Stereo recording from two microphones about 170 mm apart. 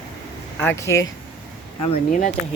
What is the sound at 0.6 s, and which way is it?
Speech, 15° left (ahead or behind).